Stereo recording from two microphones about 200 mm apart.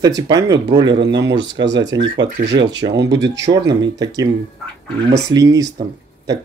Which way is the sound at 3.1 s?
60° right (ahead or behind).